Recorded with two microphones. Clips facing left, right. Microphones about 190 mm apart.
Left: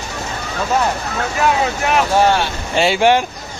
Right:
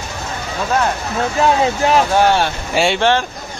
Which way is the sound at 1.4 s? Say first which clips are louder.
Right 3 dB; 30° right (ahead or behind).